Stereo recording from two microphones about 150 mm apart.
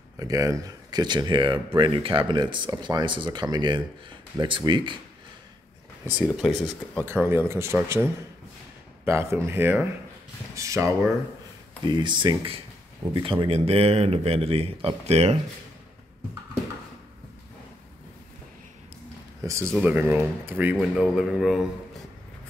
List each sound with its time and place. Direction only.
0.2 s speech: 20° right (ahead or behind)
6.0 s speech: 25° left (ahead or behind)
7.1 s a man's voice: 15° right (ahead or behind)
11.9 s speech: 30° right (ahead or behind)
19.6 s speech: centre (ahead or behind)
19.9 s a man's voice: 15° right (ahead or behind)
20.7 s speech: 5° left (ahead or behind)